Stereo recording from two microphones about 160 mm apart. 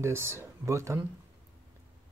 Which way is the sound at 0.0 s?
15° right (ahead or behind).